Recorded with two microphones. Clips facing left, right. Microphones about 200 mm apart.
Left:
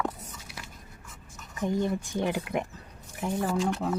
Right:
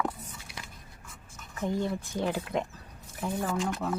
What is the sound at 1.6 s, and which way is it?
Speech, 15° left (ahead or behind).